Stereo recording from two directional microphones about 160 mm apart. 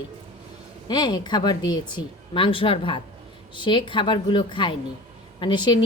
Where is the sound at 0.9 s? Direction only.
25° left (ahead or behind).